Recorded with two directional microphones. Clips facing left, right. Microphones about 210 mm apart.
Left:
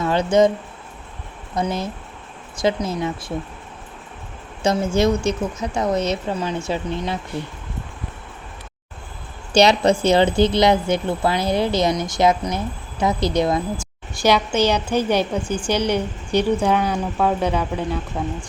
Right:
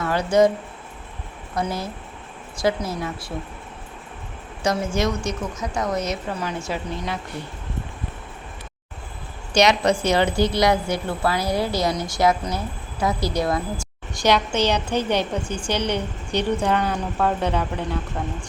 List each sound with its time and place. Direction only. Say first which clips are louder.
0.0 s a woman's voice: left 2 dB; 20° left (ahead or behind)
1.5 s a woman's voice: left 3 dB; 20° left (ahead or behind)
4.6 s a woman's voice: left 4 dB; 25° left (ahead or behind)
9.6 s a woman's voice: left 3 dB; 30° left (ahead or behind)
13.7 s a woman's voice: left 1 dB; 5° left (ahead or behind)